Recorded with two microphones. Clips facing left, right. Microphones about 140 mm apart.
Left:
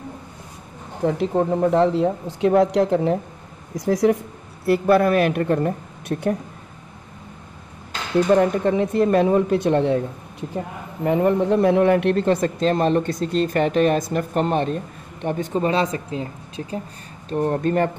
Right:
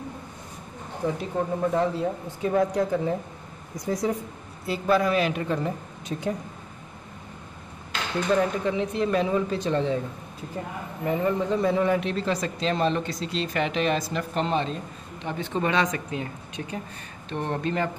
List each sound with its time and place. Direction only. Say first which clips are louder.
1.0 s speech: left 6 dB; 90° left
1.5 s speech: left 6 dB; 80° left
3.7 s speech: left 8 dB; 85° left
4.6 s speech: left 7 dB; 60° left (ahead or behind)
8.3 s speech: left 5 dB; 50° left (ahead or behind)
11.1 s speech: left 7 dB; 65° left (ahead or behind); by 16.8 s 30° left (ahead or behind)
17.3 s speech: left 7 dB; 40° left (ahead or behind)